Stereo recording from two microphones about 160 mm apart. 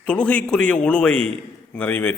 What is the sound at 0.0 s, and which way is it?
A man's voice, 5° left (ahead or behind).